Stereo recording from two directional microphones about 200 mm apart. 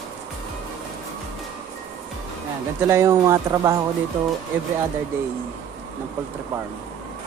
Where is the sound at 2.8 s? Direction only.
15° right (ahead or behind).